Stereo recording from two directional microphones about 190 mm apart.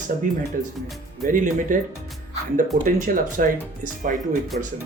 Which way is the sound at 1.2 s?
45° right (ahead or behind).